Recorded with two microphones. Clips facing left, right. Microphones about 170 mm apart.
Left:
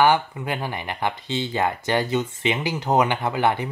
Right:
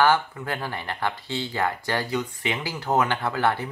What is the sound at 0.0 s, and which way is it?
Speech, 15° left (ahead or behind).